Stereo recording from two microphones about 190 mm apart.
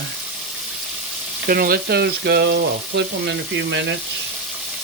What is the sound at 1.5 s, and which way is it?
Frying, 50° right (ahead or behind).